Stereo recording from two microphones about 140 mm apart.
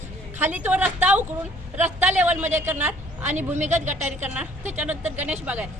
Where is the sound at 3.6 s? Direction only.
60° right (ahead or behind).